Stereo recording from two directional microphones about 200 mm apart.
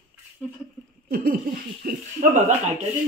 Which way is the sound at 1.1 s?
45° right (ahead or behind).